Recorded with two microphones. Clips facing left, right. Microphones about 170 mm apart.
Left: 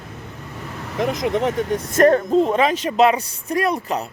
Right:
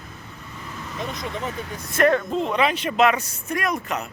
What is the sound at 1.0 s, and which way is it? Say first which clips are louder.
Speech: left 10 dB; 80° left.